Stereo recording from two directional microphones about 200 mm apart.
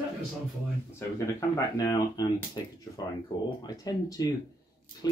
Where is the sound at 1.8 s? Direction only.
20° left (ahead or behind).